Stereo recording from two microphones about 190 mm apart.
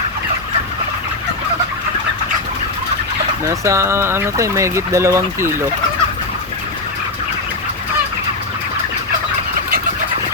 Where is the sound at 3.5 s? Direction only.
15° right (ahead or behind).